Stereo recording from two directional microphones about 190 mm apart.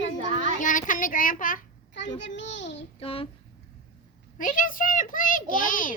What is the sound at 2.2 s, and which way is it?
Speech, 70° left (ahead or behind).